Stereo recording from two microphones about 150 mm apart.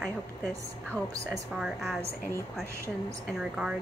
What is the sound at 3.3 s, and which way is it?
Speech, 5° right (ahead or behind).